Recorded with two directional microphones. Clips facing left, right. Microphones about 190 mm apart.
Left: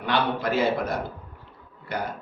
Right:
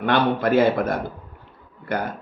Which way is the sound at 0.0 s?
55° right (ahead or behind).